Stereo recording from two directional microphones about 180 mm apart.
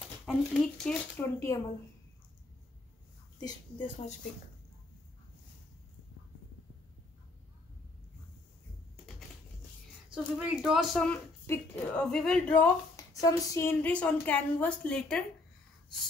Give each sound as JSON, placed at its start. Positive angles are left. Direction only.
{"t": 0.2, "sound": "a woman's voice", "side_deg": 5}
{"t": 3.3, "sound": "speech", "side_deg": 25}
{"t": 10.0, "sound": "speech", "side_deg": -5}
{"t": 11.4, "sound": "a woman's voice", "side_deg": 10}
{"t": 13.2, "sound": "a woman's voice", "side_deg": 20}